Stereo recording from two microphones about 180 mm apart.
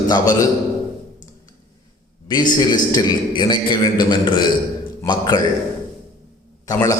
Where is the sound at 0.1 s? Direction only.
20° left (ahead or behind).